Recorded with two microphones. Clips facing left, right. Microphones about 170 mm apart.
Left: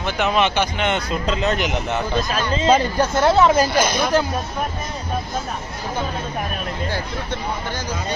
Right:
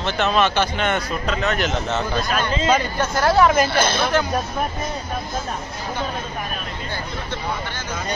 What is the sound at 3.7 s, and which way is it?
Speech, 10° left (ahead or behind).